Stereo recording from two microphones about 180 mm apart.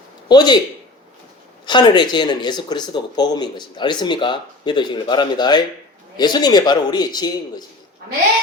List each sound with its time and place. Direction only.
0.3 s speech: 25° left (ahead or behind)
1.6 s speech: 25° left (ahead or behind)